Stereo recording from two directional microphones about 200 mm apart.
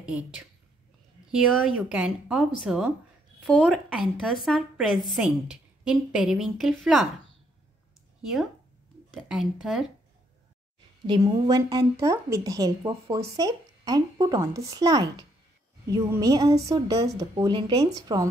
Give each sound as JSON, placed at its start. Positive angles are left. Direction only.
{"t": 0.0, "sound": "a woman's voice", "side_deg": -5}
{"t": 1.8, "sound": "a woman's voice", "side_deg": -5}
{"t": 9.1, "sound": "a woman's voice", "side_deg": 0}
{"t": 11.1, "sound": "a woman's voice", "side_deg": -20}